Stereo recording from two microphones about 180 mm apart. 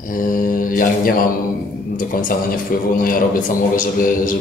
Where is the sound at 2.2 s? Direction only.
50° left (ahead or behind).